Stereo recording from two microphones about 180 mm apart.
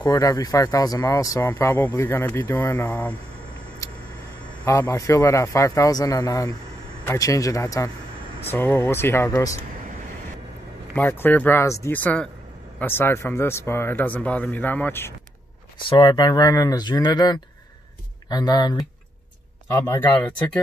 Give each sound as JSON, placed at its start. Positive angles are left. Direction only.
{"t": 0.0, "sound": "speech", "side_deg": 20}
{"t": 3.8, "sound": "vehicle", "side_deg": 15}
{"t": 4.6, "sound": "speech", "side_deg": 15}
{"t": 11.0, "sound": "speech", "side_deg": 10}
{"t": 15.9, "sound": "speech", "side_deg": 25}
{"t": 19.7, "sound": "speech", "side_deg": 10}